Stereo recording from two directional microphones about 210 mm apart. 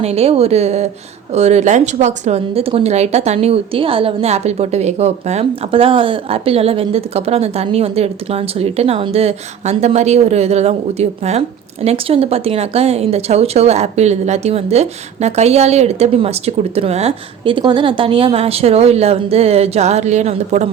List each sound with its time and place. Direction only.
0.0 s speech: 30° right (ahead or behind)